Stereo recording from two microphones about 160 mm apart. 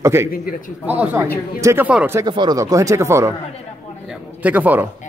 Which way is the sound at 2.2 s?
30° right (ahead or behind).